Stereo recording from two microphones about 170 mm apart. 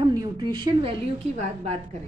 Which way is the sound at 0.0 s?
25° right (ahead or behind).